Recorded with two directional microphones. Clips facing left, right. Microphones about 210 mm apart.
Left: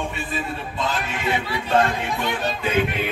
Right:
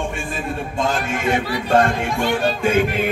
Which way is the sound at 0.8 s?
50° right (ahead or behind).